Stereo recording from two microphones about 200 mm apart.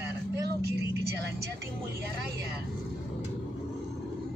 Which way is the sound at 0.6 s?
55° right (ahead or behind).